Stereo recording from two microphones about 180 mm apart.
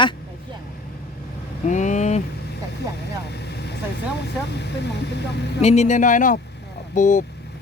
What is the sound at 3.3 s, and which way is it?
Vehicle, 65° left (ahead or behind).